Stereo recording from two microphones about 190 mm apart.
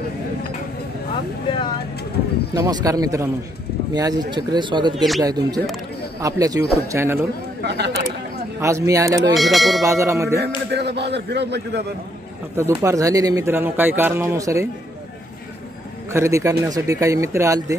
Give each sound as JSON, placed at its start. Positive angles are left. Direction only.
{"t": 2.5, "sound": "speech", "side_deg": -15}
{"t": 4.9, "sound": "speech", "side_deg": 0}
{"t": 5.2, "sound": "speech", "side_deg": -20}
{"t": 7.6, "sound": "a man's voice", "side_deg": -60}
{"t": 8.5, "sound": "speech", "side_deg": -15}
{"t": 9.4, "sound": "speech", "side_deg": 0}
{"t": 9.8, "sound": "speech", "side_deg": -15}
{"t": 10.4, "sound": "a man's voice", "side_deg": -60}
{"t": 12.5, "sound": "speech", "side_deg": -15}
{"t": 16.1, "sound": "speech", "side_deg": -15}